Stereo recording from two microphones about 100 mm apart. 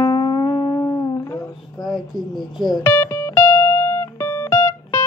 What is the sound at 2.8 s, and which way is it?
Music, 25° left (ahead or behind).